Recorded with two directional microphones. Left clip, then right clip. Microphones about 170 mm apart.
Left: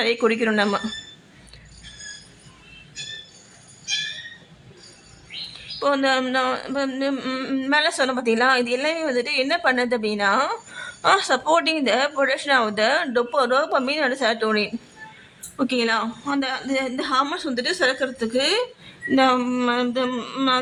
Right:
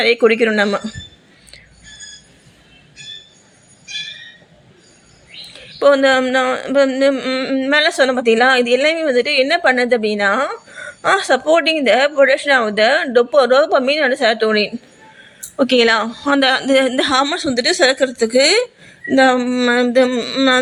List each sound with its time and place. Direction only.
0.0 s a woman's voice: 15° right (ahead or behind)
5.5 s bird: 20° right (ahead or behind)
6.2 s a woman's voice: 15° right (ahead or behind)
6.7 s a woman's voice: 25° right (ahead or behind); by 7.7 s 10° right (ahead or behind)
7.7 s a woman's voice: 20° right (ahead or behind)
15.5 s speech: 30° right (ahead or behind)
16.4 s speech: 45° right (ahead or behind)
17.2 s a woman's voice: 25° right (ahead or behind); by 19.7 s 10° right (ahead or behind)
19.7 s speech: 30° right (ahead or behind)